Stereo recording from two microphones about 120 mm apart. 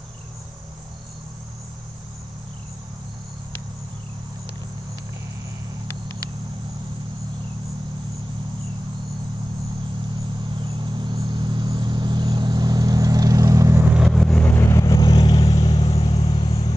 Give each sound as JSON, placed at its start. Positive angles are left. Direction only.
{"t": 10.6, "sound": "vehicle", "side_deg": -40}
{"t": 13.9, "sound": "vehicle", "side_deg": -5}
{"t": 14.3, "sound": "vehicle", "side_deg": 15}
{"t": 15.0, "sound": "vehicle", "side_deg": 40}